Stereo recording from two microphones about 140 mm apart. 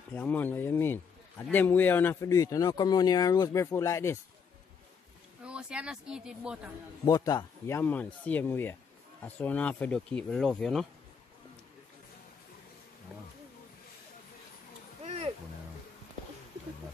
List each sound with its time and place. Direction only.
0.1 s speech: 10° left (ahead or behind)
5.4 s speech: 5° right (ahead or behind)
7.1 s speech: 25° left (ahead or behind); by 10.9 s centre (ahead or behind)